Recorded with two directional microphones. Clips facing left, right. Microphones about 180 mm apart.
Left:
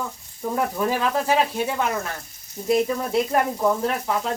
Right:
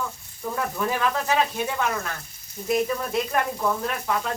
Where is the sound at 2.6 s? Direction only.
30° left (ahead or behind).